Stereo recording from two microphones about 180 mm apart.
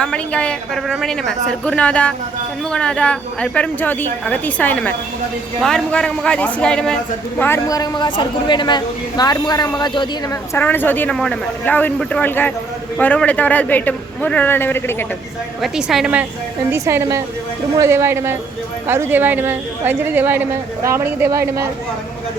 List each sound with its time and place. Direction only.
0.0 s a woman's voice: 5° left (ahead or behind); by 10.1 s 25° left (ahead or behind)
10.5 s a woman's voice: 10° left (ahead or behind)
15.6 s a woman's voice: centre (ahead or behind)
16.7 s a woman's voice: 15° right (ahead or behind)